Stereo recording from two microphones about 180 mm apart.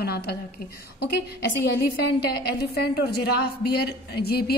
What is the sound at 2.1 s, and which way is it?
A woman's voice, 60° left (ahead or behind).